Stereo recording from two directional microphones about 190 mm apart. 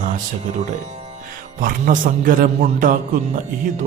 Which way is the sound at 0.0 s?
40° right (ahead or behind).